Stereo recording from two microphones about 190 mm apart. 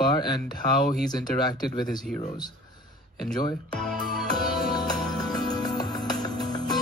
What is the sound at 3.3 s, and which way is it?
Speech, 25° left (ahead or behind).